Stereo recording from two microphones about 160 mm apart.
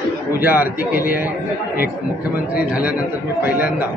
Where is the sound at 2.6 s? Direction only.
10° right (ahead or behind).